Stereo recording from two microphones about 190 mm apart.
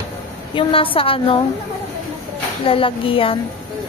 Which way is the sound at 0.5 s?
30° left (ahead or behind).